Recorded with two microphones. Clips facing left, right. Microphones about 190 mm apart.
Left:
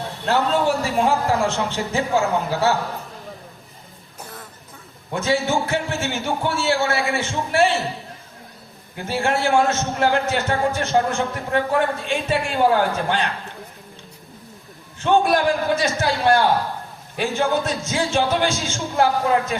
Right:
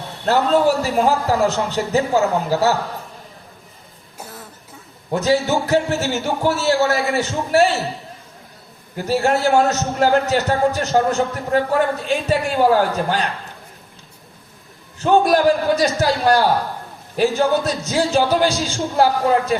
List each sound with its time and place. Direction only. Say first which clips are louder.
0.3 s a man's voice: right 4 dB; 40° right (ahead or behind)
5.1 s a man's voice: right 3 dB; 40° right (ahead or behind)
9.0 s a man's voice: right 4 dB; 40° right (ahead or behind)
15.0 s a man's voice: right 3 dB; 40° right (ahead or behind)